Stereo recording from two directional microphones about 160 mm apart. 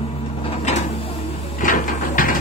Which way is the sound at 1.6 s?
60° left (ahead or behind).